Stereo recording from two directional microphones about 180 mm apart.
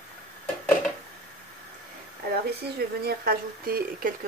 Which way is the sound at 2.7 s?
55° right (ahead or behind).